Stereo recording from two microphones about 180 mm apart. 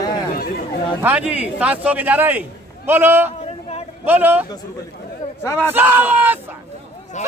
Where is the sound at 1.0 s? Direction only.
10° right (ahead or behind).